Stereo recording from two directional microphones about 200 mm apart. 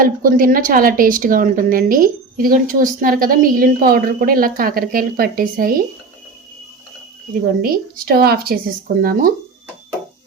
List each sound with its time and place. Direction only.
0.0 s a woman's voice: 45° right (ahead or behind)
7.6 s a woman's voice: 45° right (ahead or behind)